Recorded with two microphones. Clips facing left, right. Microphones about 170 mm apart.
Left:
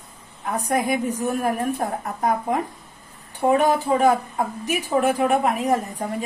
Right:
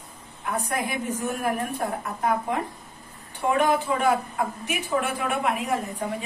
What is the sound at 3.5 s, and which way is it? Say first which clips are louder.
A woman's voice: left 2 dB; 35° left (ahead or behind).